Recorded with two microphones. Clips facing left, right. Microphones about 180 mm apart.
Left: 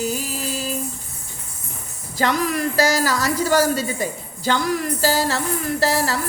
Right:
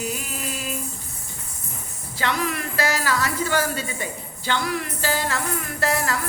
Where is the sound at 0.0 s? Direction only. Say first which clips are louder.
Left 5 dB; 35° left (ahead or behind).